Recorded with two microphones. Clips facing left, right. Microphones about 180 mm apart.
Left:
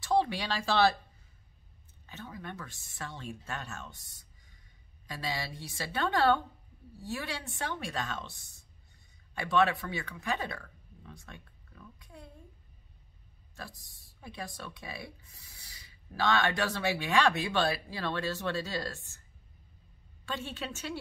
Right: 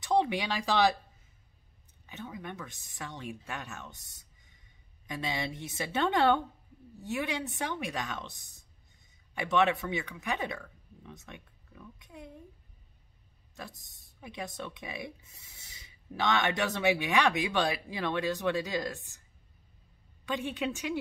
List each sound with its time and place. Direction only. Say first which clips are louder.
0.0 s speech: right 1 dB; 20° right (ahead or behind)
2.0 s a woman's voice: right 2 dB; 15° right (ahead or behind)
13.6 s speech: right 1 dB; 20° right (ahead or behind)
20.2 s speech: right 5 dB; 15° right (ahead or behind)